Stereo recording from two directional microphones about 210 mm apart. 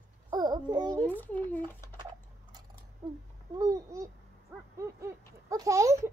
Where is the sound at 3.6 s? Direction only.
15° right (ahead or behind).